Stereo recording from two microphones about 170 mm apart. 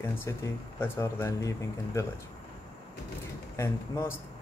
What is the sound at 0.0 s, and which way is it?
A man's voice, 15° left (ahead or behind).